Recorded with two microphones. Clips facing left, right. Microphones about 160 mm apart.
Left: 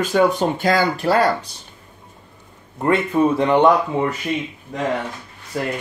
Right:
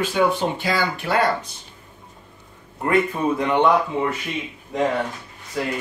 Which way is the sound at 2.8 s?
30° left (ahead or behind).